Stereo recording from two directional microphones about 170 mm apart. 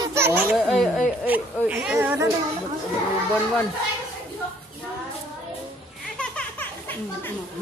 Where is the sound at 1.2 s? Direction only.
10° right (ahead or behind).